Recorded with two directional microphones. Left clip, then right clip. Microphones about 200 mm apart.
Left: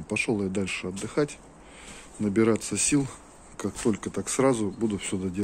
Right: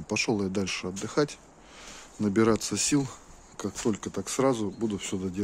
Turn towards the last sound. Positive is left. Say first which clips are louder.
# left 2 dB
turn(degrees=-20)  # may be behind; listen again after turning